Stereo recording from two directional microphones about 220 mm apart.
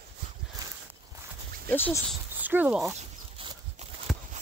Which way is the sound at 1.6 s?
10° left (ahead or behind).